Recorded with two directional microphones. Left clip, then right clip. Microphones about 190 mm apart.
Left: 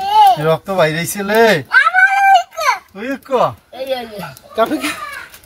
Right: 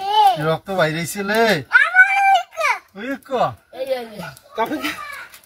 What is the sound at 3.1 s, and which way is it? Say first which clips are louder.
Speech: left 5 dB; 10° left (ahead or behind).